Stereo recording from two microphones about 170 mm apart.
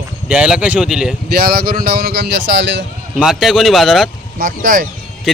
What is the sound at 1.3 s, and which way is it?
Speech, 65° right (ahead or behind).